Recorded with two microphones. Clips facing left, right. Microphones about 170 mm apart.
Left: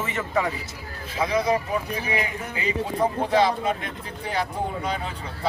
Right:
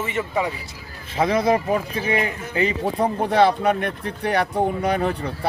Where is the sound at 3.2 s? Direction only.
65° right (ahead or behind).